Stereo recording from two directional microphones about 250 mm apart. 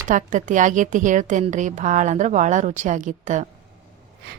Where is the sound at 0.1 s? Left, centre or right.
Right.